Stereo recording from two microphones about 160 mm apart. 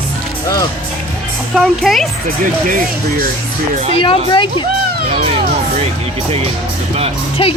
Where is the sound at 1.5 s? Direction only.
Centre (ahead or behind).